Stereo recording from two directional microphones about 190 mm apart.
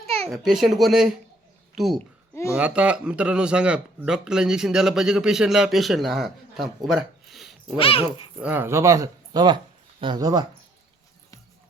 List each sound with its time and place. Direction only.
0.0 s babbling: 30° right (ahead or behind)
0.3 s speech: centre (ahead or behind)
7.8 s speech: 30° left (ahead or behind)
8.4 s speech: 10° right (ahead or behind)